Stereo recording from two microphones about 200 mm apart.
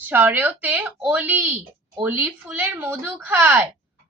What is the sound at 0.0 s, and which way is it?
A woman's voice, 10° right (ahead or behind).